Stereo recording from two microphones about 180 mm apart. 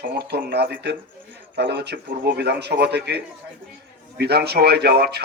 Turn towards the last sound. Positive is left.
turn(degrees=-65)  # may be behind; listen again after turning